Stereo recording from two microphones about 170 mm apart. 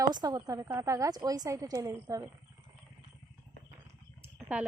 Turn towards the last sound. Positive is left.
turn(degrees=-10)  # may be behind; listen again after turning